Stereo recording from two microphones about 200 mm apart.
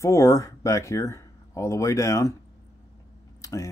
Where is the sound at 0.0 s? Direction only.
15° left (ahead or behind).